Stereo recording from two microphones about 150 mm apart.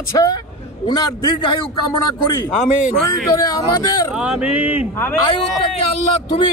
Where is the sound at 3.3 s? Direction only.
25° left (ahead or behind).